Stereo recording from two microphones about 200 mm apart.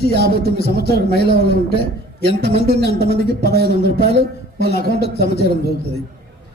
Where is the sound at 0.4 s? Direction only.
50° left (ahead or behind).